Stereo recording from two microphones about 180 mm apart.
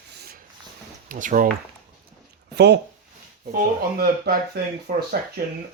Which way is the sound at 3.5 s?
55° right (ahead or behind).